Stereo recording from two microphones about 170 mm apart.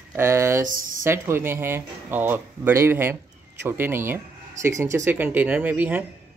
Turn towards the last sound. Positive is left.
turn(degrees=-10)  # may be behind; listen again after turning